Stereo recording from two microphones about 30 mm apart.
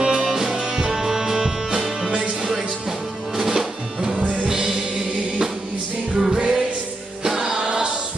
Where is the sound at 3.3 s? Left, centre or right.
Centre.